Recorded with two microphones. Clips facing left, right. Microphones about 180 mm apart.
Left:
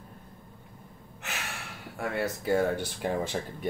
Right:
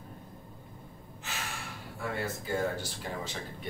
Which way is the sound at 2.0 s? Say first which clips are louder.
Left 4 dB; 65° left (ahead or behind).